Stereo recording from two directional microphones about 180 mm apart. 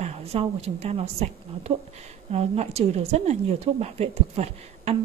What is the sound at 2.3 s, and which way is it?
A woman's voice, 35° right (ahead or behind).